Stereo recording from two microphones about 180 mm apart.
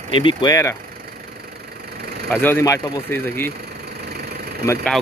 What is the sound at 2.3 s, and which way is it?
Speech, 10° left (ahead or behind).